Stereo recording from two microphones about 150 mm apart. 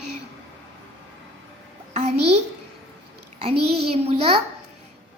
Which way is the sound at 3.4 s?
40° right (ahead or behind).